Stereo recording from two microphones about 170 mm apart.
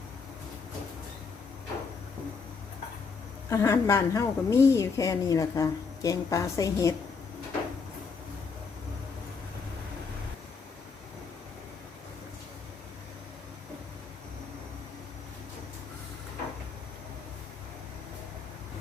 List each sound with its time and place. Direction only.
3.5 s a woman's voice: 15° left (ahead or behind)